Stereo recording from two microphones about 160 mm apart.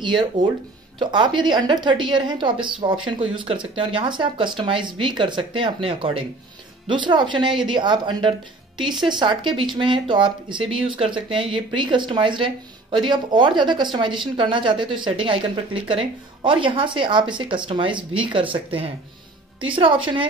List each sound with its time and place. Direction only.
0.0 s a woman's voice: 30° right (ahead or behind)